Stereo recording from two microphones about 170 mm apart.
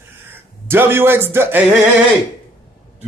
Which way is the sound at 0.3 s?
15° right (ahead or behind).